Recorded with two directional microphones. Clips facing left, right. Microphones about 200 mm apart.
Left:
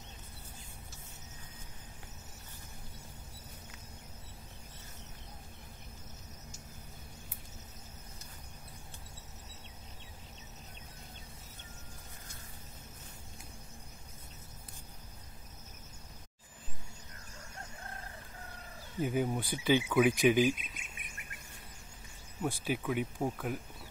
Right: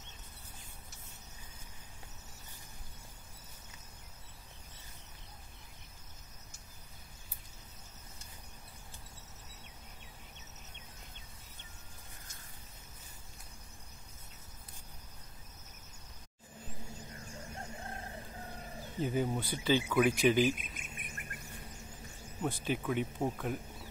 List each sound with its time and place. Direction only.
18.9 s speech: 10° left (ahead or behind)
20.5 s duck: 50° right (ahead or behind)
22.4 s speech: 10° left (ahead or behind)